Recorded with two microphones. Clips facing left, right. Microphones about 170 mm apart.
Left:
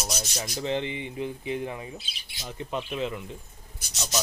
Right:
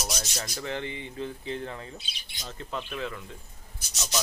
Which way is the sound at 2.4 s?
20° left (ahead or behind).